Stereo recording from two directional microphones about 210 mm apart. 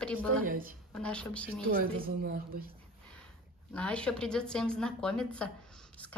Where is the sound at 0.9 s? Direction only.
5° left (ahead or behind).